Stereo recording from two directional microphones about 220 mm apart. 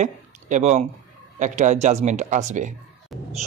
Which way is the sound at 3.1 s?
Centre (ahead or behind).